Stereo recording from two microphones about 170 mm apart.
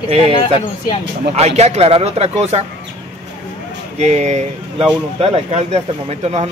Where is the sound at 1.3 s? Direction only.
40° right (ahead or behind).